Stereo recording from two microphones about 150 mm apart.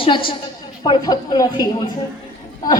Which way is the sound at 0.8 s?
30° left (ahead or behind).